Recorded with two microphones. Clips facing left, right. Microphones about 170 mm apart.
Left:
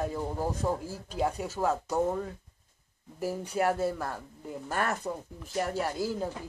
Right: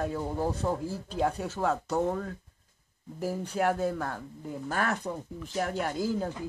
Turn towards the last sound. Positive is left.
turn(degrees=5)  # may be behind; listen again after turning